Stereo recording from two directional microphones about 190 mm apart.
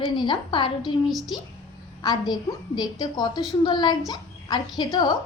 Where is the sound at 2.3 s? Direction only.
20° left (ahead or behind).